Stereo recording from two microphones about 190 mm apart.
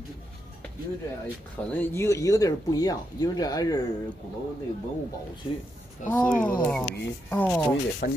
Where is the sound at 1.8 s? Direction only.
15° left (ahead or behind).